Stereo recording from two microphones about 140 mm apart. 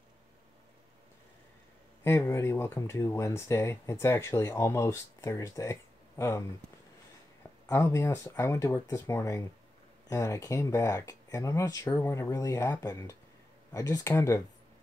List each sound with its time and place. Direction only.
2.0 s speech: 20° left (ahead or behind)
7.7 s speech: 20° left (ahead or behind)